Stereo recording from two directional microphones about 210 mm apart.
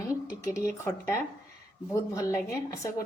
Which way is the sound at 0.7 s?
10° left (ahead or behind).